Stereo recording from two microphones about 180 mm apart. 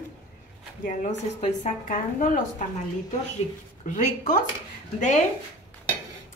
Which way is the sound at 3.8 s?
40° left (ahead or behind).